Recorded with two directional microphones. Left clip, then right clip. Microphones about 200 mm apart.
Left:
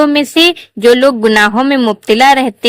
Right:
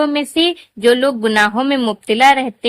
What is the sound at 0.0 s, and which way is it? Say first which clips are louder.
Speech: left 7 dB; 25° left (ahead or behind).